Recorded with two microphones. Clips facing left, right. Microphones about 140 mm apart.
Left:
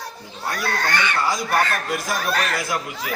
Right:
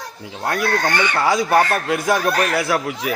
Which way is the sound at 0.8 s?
15° right (ahead or behind).